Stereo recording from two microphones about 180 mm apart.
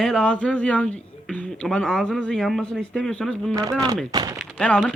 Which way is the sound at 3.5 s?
20° right (ahead or behind).